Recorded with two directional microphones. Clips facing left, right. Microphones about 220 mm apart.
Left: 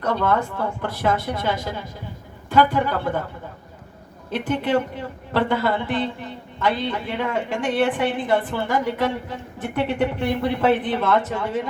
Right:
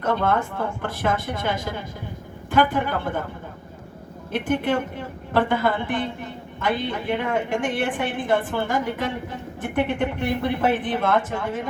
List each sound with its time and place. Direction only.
0.0 s a woman's voice: 50° right (ahead or behind)
4.3 s a woman's voice: 50° right (ahead or behind)